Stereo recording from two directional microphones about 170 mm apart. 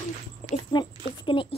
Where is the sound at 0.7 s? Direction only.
30° left (ahead or behind).